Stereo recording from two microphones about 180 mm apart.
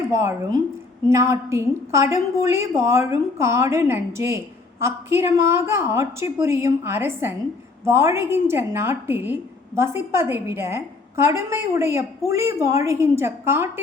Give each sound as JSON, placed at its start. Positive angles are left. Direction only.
{"t": 0.2, "sound": "a woman's voice", "side_deg": -15}